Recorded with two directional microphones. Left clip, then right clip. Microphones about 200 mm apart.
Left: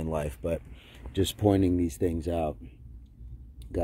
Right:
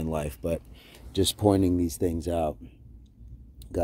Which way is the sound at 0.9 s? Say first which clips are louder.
Right 3 dB; 10° right (ahead or behind).